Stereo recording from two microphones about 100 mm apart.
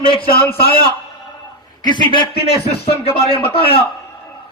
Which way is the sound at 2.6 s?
90° left.